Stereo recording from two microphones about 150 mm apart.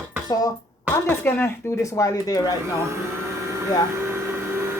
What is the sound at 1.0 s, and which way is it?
Speech, 15° left (ahead or behind).